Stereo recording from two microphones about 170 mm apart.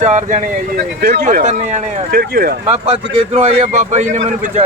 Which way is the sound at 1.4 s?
45° right (ahead or behind).